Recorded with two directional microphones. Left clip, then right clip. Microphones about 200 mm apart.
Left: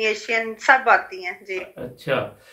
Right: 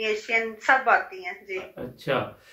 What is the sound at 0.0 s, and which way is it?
A woman's voice, 45° left (ahead or behind).